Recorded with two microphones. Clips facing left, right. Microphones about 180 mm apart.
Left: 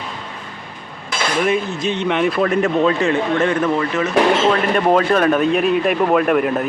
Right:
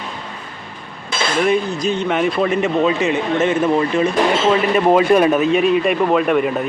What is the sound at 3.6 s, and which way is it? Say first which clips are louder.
Speech: right 3 dB; 30° right (ahead or behind).